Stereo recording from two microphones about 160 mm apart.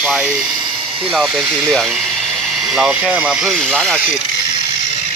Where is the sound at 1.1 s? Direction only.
Centre (ahead or behind).